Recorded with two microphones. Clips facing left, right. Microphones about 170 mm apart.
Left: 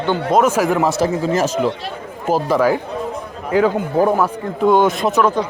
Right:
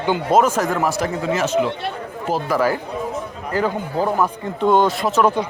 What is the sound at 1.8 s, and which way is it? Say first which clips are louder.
Speech: right 2 dB; 60° right (ahead or behind).